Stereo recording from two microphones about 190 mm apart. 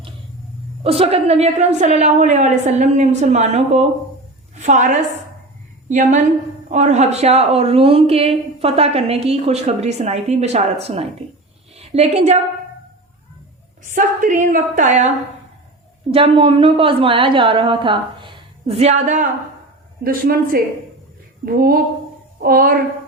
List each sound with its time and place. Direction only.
0.9 s a woman's voice: 30° right (ahead or behind)
4.5 s a sound: 40° right (ahead or behind)
5.9 s a woman's voice: 40° right (ahead or behind)
13.9 s a woman's voice: 45° right (ahead or behind)
16.1 s a woman's voice: 30° right (ahead or behind); by 22.8 s 50° right (ahead or behind)